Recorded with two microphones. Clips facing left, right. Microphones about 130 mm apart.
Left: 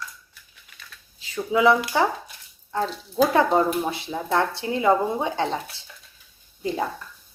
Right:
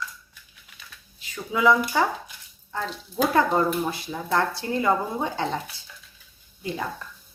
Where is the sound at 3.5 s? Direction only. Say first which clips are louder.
Left 2 dB; 25° left (ahead or behind).